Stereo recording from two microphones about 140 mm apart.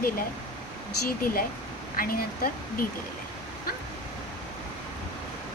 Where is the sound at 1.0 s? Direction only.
90° left.